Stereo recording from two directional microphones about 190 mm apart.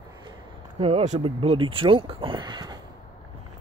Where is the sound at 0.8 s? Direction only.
30° right (ahead or behind).